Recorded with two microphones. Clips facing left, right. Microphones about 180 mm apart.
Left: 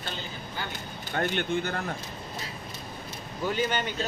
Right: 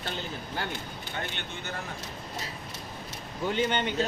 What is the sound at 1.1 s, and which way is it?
Speech, 45° left (ahead or behind).